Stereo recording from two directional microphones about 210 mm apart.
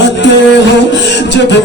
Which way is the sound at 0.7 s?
55° left (ahead or behind).